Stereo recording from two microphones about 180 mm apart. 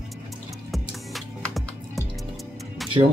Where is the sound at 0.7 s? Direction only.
Centre (ahead or behind).